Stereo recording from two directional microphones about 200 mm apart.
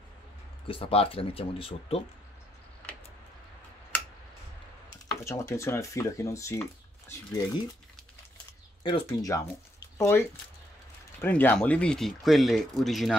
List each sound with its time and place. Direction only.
0.7 s speech: 25° left (ahead or behind)
5.0 s speech: 15° left (ahead or behind)
8.8 s speech: 20° left (ahead or behind); by 13.1 s centre (ahead or behind)